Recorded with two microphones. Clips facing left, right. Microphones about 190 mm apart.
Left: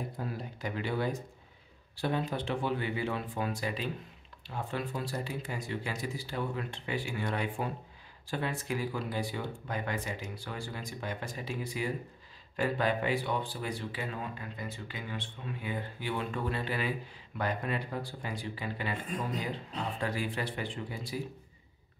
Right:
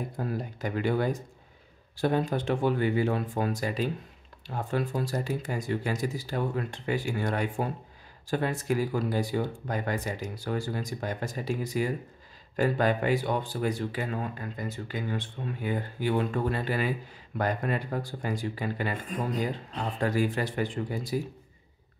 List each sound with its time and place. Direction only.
0.2 s speech: 50° right (ahead or behind)
20.0 s speech: 45° right (ahead or behind)